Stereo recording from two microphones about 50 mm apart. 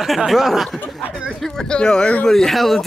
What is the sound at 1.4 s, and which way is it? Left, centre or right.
Speech, centre.